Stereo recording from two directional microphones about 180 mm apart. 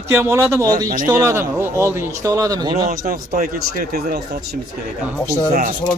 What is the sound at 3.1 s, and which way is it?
Speech, 55° right (ahead or behind).